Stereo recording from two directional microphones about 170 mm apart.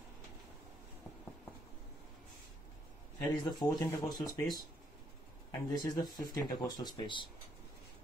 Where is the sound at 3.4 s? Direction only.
20° left (ahead or behind).